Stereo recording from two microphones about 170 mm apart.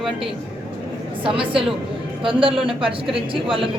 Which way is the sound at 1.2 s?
30° right (ahead or behind).